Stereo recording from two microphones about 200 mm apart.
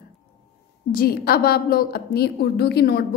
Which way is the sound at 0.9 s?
50° left (ahead or behind).